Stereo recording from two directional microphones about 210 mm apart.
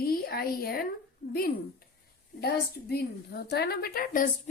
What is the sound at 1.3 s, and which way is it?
A woman's voice, 45° left (ahead or behind).